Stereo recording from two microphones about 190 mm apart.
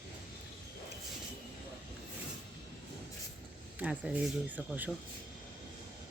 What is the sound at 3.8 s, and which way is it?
Speech, 5° right (ahead or behind).